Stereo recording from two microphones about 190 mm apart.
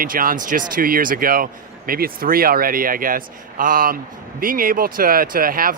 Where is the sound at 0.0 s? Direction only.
50° right (ahead or behind).